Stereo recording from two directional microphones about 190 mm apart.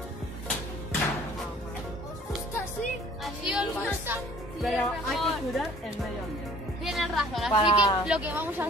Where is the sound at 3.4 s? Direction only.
5° right (ahead or behind).